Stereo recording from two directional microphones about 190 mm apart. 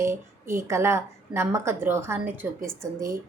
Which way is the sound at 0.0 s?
15° right (ahead or behind).